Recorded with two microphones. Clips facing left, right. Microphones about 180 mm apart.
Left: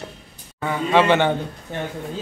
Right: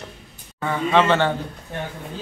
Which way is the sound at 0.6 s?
10° left (ahead or behind).